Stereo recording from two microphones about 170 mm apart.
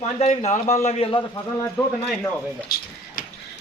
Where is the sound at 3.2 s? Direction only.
55° left (ahead or behind).